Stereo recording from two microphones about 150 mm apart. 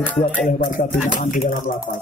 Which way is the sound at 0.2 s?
60° left (ahead or behind).